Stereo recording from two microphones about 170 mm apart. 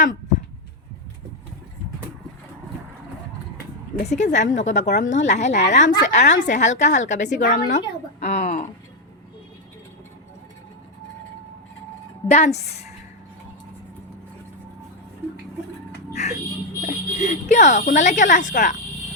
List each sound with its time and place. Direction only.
4.0 s speech: 45° left (ahead or behind)
8.2 s speech: 40° left (ahead or behind)
12.3 s speech: 40° left (ahead or behind)
16.1 s music: 40° left (ahead or behind)
16.8 s speech: 45° left (ahead or behind)